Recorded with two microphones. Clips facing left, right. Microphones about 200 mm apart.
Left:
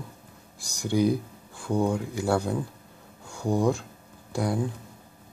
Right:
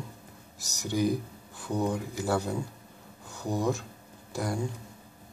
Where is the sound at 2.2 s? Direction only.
5° right (ahead or behind).